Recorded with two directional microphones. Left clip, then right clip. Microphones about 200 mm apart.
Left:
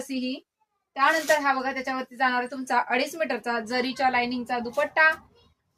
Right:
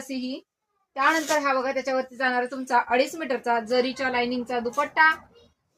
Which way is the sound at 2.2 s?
25° left (ahead or behind).